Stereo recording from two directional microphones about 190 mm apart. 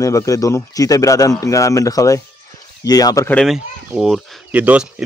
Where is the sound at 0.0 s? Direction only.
15° left (ahead or behind).